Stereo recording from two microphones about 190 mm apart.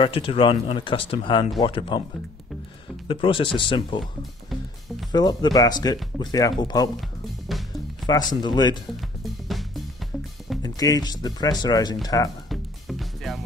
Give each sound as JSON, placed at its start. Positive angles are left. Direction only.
{"t": 0.0, "sound": "speech", "side_deg": 30}
{"t": 3.1, "sound": "speech", "side_deg": 25}
{"t": 5.1, "sound": "speech", "side_deg": 20}
{"t": 7.0, "sound": "music", "side_deg": 0}
{"t": 8.1, "sound": "speech", "side_deg": 20}
{"t": 9.0, "sound": "music", "side_deg": 0}
{"t": 10.6, "sound": "speech", "side_deg": 20}
{"t": 12.4, "sound": "music", "side_deg": 0}